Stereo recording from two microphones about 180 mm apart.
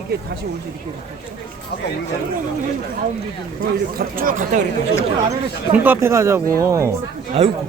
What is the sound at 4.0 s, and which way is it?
Speech, 50° right (ahead or behind).